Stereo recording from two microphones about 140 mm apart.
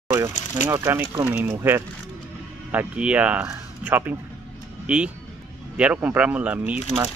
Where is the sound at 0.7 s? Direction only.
20° right (ahead or behind).